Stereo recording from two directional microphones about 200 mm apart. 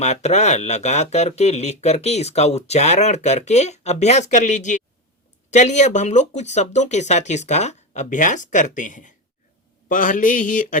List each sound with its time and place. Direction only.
0.0 s speech: 35° left (ahead or behind)